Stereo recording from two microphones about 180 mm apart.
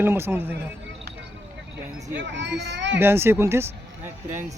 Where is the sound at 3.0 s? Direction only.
15° right (ahead or behind).